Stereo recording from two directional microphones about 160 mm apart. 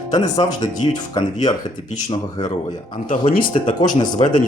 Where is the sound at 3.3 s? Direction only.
60° left (ahead or behind).